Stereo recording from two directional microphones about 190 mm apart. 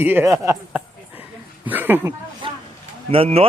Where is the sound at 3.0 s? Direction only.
30° right (ahead or behind).